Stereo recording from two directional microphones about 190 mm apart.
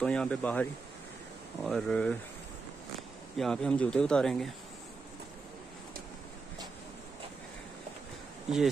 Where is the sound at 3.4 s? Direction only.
5° left (ahead or behind).